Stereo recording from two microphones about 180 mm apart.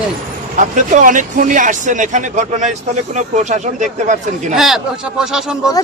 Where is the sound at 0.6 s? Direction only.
45° right (ahead or behind).